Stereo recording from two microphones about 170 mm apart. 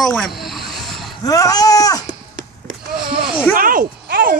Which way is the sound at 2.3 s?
90° right.